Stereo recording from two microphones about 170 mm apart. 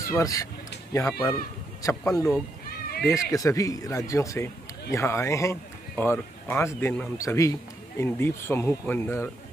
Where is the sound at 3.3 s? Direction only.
20° left (ahead or behind).